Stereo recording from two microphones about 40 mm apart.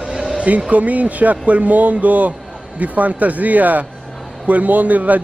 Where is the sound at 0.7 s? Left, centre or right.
Right.